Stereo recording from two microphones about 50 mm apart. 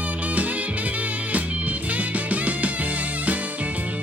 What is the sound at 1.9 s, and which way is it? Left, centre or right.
Music, right.